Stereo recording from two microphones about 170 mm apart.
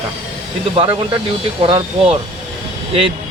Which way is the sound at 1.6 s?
30° right (ahead or behind).